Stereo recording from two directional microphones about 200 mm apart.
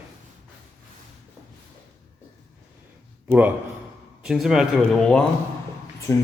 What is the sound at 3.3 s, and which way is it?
Speech, 10° right (ahead or behind).